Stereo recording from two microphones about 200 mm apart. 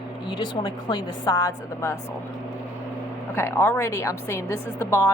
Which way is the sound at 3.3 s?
10° left (ahead or behind).